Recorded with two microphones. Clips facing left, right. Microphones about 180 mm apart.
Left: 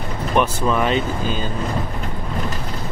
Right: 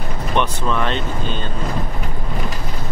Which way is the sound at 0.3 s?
5° left (ahead or behind).